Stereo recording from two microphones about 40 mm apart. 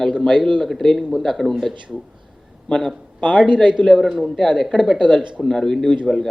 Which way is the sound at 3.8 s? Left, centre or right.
Left.